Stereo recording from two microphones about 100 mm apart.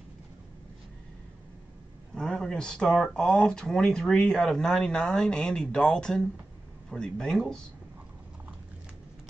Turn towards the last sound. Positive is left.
turn(degrees=5)  # may be behind; listen again after turning